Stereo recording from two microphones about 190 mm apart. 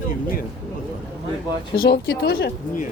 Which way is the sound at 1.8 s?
55° left (ahead or behind).